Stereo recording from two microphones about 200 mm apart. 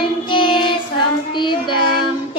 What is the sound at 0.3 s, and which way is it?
Child singing, 25° left (ahead or behind).